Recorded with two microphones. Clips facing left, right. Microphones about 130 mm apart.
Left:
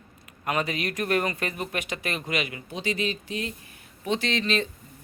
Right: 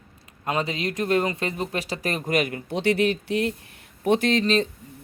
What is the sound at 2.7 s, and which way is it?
Speech, 65° right (ahead or behind).